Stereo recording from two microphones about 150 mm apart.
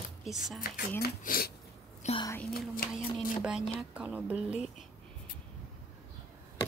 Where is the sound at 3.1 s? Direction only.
5° right (ahead or behind).